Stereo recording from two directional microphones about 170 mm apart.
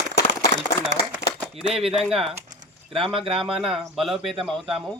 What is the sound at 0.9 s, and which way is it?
Speech, 90° right.